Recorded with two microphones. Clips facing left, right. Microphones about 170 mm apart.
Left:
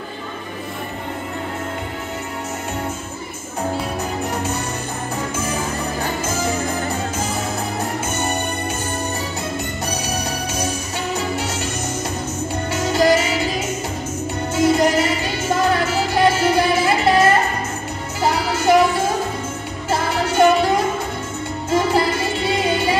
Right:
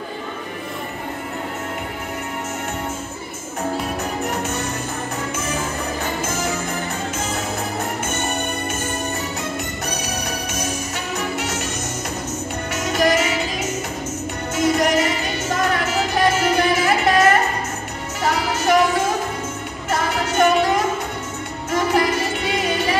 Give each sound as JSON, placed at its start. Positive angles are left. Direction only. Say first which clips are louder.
{"t": 10.0, "sound": "music", "louder": "left 2 dB", "side_deg": 30}
{"t": 12.7, "sound": "music", "louder": "left 2 dB", "side_deg": 30}
{"t": 19.9, "sound": "music", "louder": "left 2 dB", "side_deg": 30}
{"t": 21.6, "sound": "music", "louder": "left 1 dB", "side_deg": 30}